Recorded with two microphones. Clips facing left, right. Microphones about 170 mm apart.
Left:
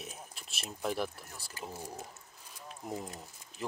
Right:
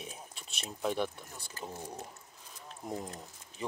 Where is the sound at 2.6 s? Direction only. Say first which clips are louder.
Right 1 dB; 5° left (ahead or behind).